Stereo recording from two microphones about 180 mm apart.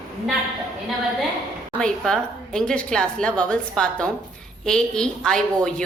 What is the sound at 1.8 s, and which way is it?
A woman's voice, 5° left (ahead or behind).